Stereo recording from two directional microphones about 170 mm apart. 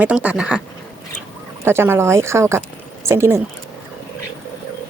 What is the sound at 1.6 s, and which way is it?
Speech, 15° right (ahead or behind).